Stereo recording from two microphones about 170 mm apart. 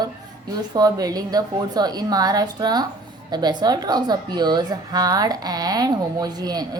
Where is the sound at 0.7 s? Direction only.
20° right (ahead or behind).